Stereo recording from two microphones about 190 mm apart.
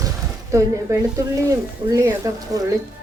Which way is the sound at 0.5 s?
15° right (ahead or behind).